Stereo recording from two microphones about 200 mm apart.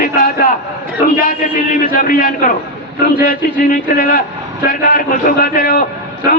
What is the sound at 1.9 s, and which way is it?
A man's voice, 45° left (ahead or behind).